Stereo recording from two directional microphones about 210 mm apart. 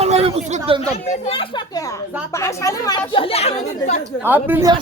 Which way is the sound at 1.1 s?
30° left (ahead or behind).